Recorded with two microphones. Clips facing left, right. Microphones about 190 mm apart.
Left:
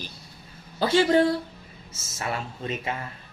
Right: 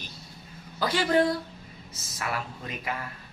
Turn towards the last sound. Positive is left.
turn(degrees=25)  # may be behind; listen again after turning